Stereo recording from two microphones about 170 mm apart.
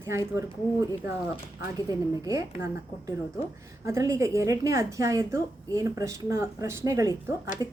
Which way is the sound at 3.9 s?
20° right (ahead or behind).